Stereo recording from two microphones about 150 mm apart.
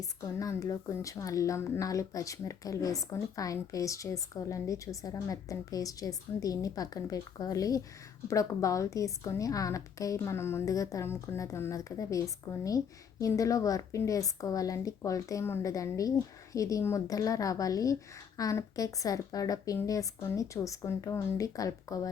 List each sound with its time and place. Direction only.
0.0 s a woman's voice: 20° left (ahead or behind)